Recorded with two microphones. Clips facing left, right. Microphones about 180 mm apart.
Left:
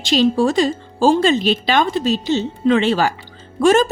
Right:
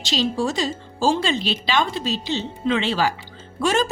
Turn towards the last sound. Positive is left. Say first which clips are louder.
# left 8 dB
turn(degrees=50)  # may be behind; listen again after turning